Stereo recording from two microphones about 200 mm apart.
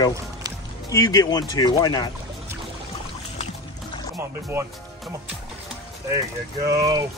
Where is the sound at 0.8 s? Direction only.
20° left (ahead or behind).